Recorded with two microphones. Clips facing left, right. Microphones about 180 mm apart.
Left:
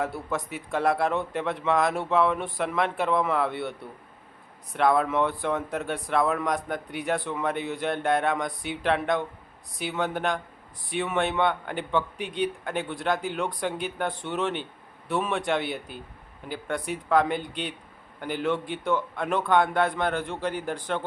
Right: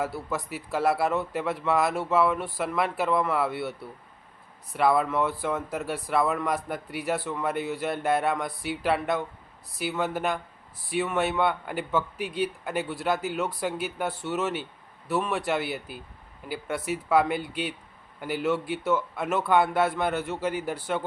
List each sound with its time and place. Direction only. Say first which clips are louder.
0.0 s a man's voice: left 1 dB; centre (ahead or behind)